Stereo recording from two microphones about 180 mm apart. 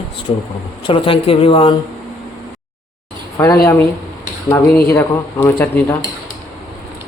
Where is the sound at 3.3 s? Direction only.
15° left (ahead or behind).